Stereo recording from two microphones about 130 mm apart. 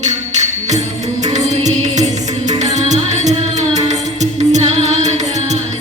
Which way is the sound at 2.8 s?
65° right (ahead or behind).